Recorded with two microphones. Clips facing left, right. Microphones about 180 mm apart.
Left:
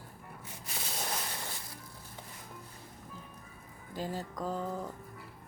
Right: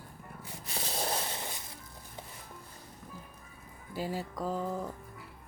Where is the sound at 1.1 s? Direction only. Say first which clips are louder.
Right 3 dB; 20° right (ahead or behind).